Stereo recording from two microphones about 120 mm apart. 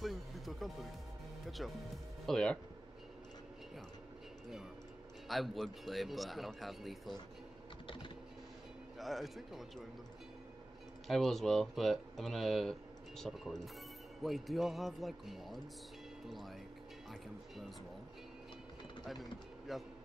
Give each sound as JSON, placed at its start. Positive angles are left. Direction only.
{"t": 0.0, "sound": "music", "side_deg": 0}
{"t": 1.6, "sound": "a man's voice", "side_deg": 0}
{"t": 5.3, "sound": "a man's voice", "side_deg": 0}
{"t": 7.8, "sound": "typing", "side_deg": 45}
{"t": 8.9, "sound": "a man's voice", "side_deg": 0}
{"t": 11.1, "sound": "a man's voice", "side_deg": 0}
{"t": 19.7, "sound": "a man's voice", "side_deg": 0}